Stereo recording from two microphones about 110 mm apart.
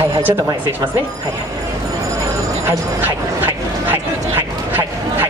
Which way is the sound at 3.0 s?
15° right (ahead or behind).